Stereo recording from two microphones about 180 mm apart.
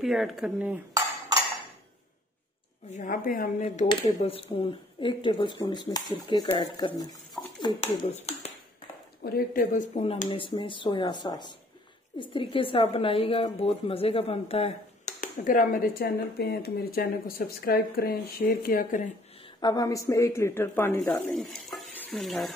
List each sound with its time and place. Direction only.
0.0 s speech: centre (ahead or behind)
2.9 s speech: 45° left (ahead or behind)
3.9 s a woman's voice: 30° left (ahead or behind)
9.2 s a woman's voice: 55° left (ahead or behind); by 15.2 s 40° left (ahead or behind)
15.3 s speech: 50° left (ahead or behind)
19.6 s a woman's voice: 20° left (ahead or behind); by 22.5 s centre (ahead or behind)